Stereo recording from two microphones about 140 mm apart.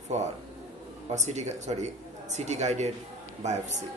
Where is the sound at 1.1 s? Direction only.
55° right (ahead or behind).